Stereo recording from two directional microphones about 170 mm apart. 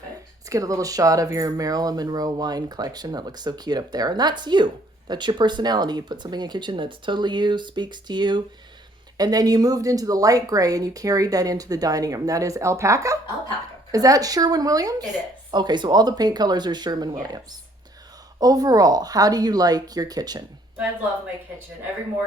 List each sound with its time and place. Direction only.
0.5 s speech: 20° right (ahead or behind)